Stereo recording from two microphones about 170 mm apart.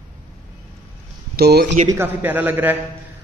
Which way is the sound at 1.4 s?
70° right (ahead or behind).